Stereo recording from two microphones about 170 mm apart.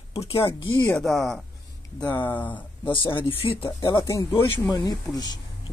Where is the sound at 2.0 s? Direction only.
10° left (ahead or behind).